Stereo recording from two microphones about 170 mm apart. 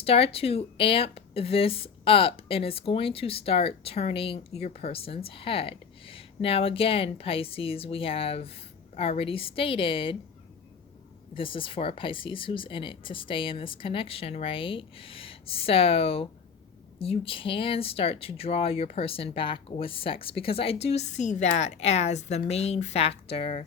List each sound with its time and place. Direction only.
0.0 s speech: 35° left (ahead or behind)
11.3 s speech: 30° left (ahead or behind)